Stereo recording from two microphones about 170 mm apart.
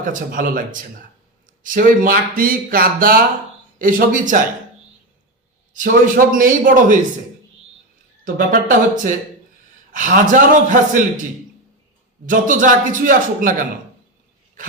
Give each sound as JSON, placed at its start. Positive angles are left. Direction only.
{"t": 0.0, "sound": "a man's voice", "side_deg": -50}
{"t": 5.7, "sound": "a man's voice", "side_deg": -55}
{"t": 8.2, "sound": "a man's voice", "side_deg": -55}
{"t": 12.2, "sound": "a man's voice", "side_deg": -50}